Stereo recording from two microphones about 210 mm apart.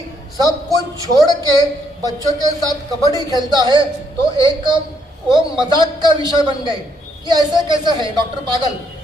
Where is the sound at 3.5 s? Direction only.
20° right (ahead or behind).